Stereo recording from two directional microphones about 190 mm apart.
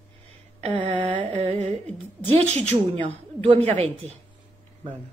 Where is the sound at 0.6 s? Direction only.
35° right (ahead or behind).